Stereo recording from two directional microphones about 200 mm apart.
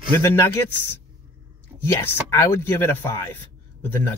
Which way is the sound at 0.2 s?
15° left (ahead or behind).